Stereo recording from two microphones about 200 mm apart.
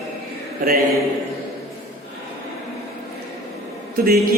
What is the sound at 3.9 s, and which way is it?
Speech, 50° right (ahead or behind).